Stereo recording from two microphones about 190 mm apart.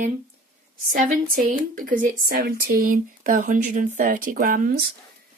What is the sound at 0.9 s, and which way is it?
Speech, 45° right (ahead or behind).